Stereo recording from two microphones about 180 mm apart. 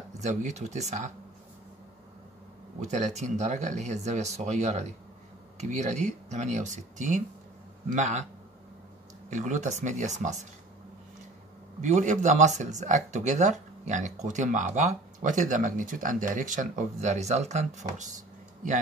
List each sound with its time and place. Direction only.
0.2 s speech: 40° right (ahead or behind)
2.8 s speech: 40° right (ahead or behind)
9.3 s speech: 40° right (ahead or behind)
11.8 s speech: 40° right (ahead or behind)